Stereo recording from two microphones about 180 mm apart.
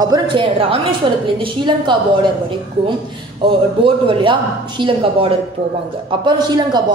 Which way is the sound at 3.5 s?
30° right (ahead or behind).